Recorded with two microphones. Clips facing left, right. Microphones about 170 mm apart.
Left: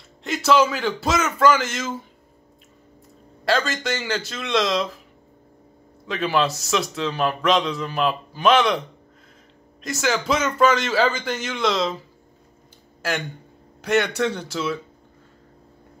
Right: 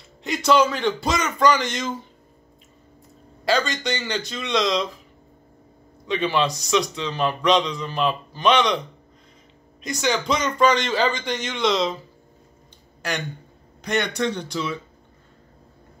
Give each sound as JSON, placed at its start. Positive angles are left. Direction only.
{"t": 0.2, "sound": "a man's voice", "side_deg": 0}
{"t": 3.4, "sound": "a man's voice", "side_deg": 0}
{"t": 6.0, "sound": "a man's voice", "side_deg": 0}
{"t": 9.8, "sound": "a man's voice", "side_deg": 5}
{"t": 13.8, "sound": "a man's voice", "side_deg": 5}